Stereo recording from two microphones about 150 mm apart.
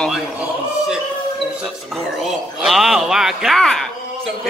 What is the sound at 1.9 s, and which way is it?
A man's voice, centre (ahead or behind).